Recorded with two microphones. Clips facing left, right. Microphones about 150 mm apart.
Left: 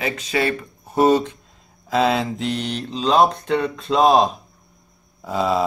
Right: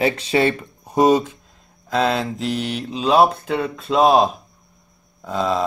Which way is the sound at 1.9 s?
Centre (ahead or behind).